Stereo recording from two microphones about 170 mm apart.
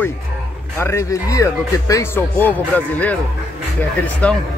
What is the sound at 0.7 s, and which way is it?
Speech, 15° left (ahead or behind).